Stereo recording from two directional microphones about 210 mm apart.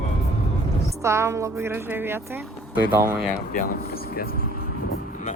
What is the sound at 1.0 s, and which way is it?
Speech, 15° right (ahead or behind).